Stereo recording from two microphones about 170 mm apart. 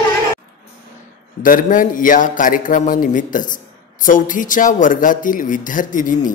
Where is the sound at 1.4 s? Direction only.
55° left (ahead or behind).